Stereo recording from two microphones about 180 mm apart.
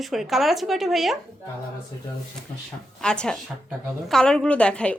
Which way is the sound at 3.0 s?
5° left (ahead or behind).